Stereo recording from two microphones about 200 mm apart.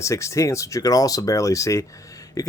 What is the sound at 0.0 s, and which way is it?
Speech, 15° left (ahead or behind).